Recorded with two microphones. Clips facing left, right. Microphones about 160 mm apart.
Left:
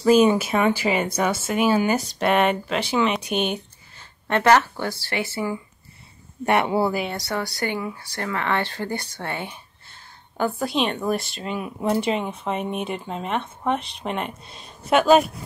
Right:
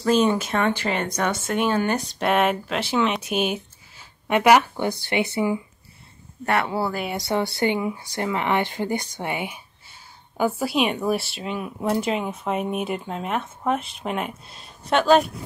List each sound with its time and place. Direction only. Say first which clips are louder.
0.0 s speech: left 3 dB; 10° left (ahead or behind); by 5.6 s 20° right (ahead or behind)
6.4 s speech: left 3 dB; 20° left (ahead or behind)
7.2 s speech: right 4 dB; 20° right (ahead or behind); by 15.2 s 5° left (ahead or behind)